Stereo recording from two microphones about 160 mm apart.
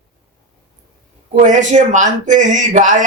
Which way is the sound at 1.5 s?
50° right (ahead or behind).